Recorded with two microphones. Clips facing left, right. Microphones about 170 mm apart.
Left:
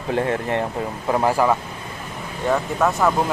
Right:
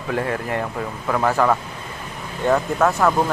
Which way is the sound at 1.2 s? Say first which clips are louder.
Right 1 dB; 10° left (ahead or behind).